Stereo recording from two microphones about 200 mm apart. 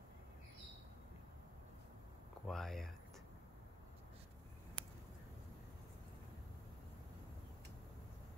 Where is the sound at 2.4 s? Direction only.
Centre (ahead or behind).